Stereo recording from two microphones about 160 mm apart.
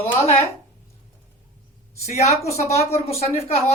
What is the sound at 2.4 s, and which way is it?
Speech, 40° left (ahead or behind).